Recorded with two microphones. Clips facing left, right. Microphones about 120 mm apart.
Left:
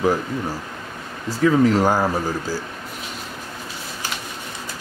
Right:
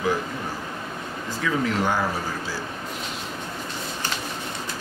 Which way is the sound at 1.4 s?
40° left (ahead or behind).